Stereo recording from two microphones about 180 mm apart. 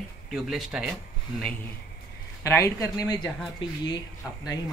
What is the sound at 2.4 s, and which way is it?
Speech, 15° left (ahead or behind).